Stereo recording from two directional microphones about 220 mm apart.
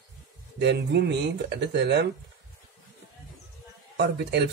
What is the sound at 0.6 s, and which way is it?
Speech, 50° right (ahead or behind).